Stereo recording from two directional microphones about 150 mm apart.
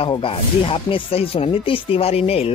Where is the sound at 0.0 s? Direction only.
35° left (ahead or behind).